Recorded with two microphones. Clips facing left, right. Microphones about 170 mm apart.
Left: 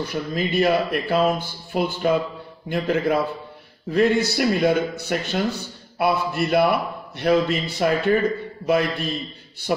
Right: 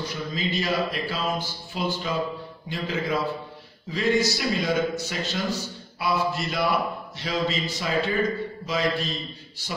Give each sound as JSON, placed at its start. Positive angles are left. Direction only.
{"t": 0.0, "sound": "a man's voice", "side_deg": 55}